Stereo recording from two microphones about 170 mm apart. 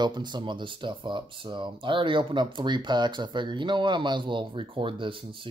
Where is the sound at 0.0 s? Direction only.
25° right (ahead or behind).